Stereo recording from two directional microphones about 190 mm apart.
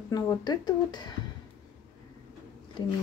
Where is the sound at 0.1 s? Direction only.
20° left (ahead or behind).